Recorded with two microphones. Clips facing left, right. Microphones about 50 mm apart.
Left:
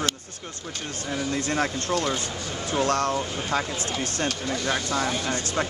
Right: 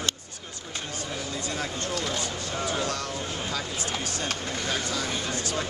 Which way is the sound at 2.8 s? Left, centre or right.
Left.